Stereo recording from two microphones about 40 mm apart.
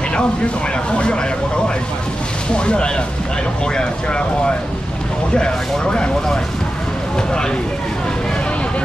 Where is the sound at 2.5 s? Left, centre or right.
Left.